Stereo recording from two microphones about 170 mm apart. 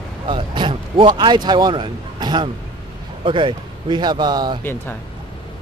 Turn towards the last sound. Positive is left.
turn(degrees=10)  # may be behind; listen again after turning